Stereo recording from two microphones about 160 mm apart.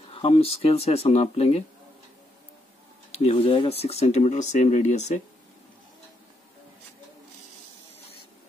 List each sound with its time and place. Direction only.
0.1 s speech: 35° left (ahead or behind)
3.1 s speech: 40° left (ahead or behind)